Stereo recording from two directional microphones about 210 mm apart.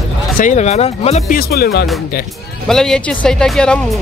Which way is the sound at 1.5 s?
50° left (ahead or behind).